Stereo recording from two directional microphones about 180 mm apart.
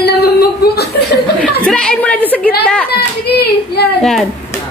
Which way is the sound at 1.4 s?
5° left (ahead or behind).